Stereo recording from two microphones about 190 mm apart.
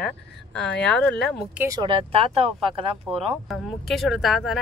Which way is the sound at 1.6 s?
20° right (ahead or behind).